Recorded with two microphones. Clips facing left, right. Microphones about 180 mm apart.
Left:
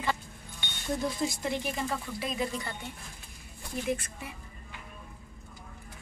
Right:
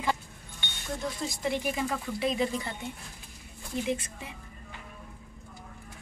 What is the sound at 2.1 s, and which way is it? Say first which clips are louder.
Speech: right 5 dB; 25° right (ahead or behind).